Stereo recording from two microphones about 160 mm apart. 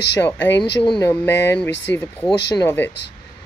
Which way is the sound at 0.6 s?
30° left (ahead or behind).